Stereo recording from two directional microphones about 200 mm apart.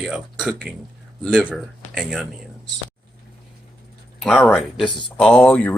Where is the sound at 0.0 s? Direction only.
5° right (ahead or behind).